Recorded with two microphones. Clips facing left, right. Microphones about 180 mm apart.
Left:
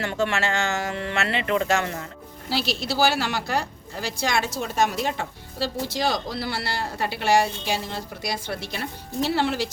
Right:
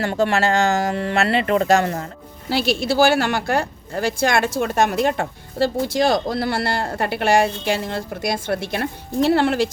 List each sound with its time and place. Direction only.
0.0 s speech: 35° right (ahead or behind)
2.5 s speech: 55° right (ahead or behind)